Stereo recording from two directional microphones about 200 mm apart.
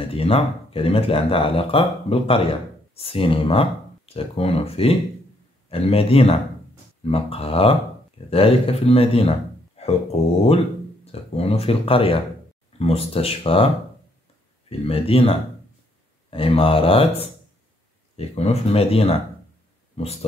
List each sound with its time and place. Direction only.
0.0 s speech: 30° left (ahead or behind)
9.8 s a sound: 30° left (ahead or behind)
11.1 s speech: 30° left (ahead or behind)
14.7 s speech: 30° left (ahead or behind)